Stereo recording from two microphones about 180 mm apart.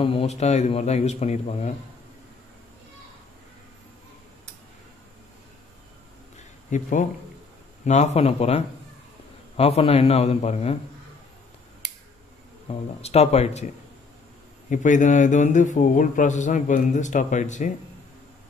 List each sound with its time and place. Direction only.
0.0 s speech: 30° left (ahead or behind)
6.3 s a sound: 45° left (ahead or behind)
7.8 s speech: 40° left (ahead or behind)
12.6 s speech: 35° left (ahead or behind)
14.7 s speech: 45° left (ahead or behind)